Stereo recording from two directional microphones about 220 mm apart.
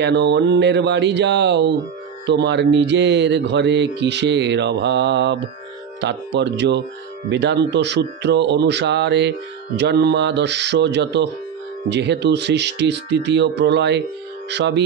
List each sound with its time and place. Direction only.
0.0 s speech: 50° right (ahead or behind)